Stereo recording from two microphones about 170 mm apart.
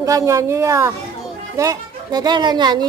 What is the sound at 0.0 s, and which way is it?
A woman's voice, 20° right (ahead or behind).